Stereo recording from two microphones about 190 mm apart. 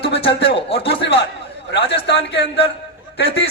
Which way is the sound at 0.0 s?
30° left (ahead or behind).